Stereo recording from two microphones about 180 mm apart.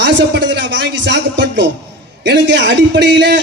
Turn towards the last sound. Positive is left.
turn(degrees=-75)  # may be behind; listen again after turning